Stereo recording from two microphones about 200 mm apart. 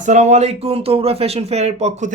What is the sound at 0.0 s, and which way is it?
Speech, 35° right (ahead or behind).